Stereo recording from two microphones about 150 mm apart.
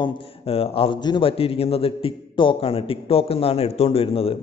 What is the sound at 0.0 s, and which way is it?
A man's voice, 40° left (ahead or behind).